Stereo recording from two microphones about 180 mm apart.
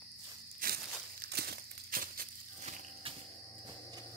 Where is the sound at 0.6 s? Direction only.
50° right (ahead or behind).